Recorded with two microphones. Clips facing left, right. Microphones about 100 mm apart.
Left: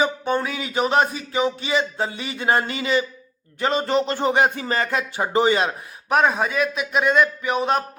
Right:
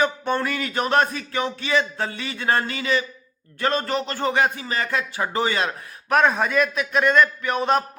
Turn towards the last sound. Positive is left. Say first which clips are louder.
# even
turn(degrees=0)  # may be behind; listen again after turning